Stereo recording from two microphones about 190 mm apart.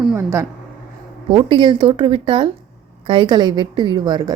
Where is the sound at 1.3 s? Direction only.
30° right (ahead or behind).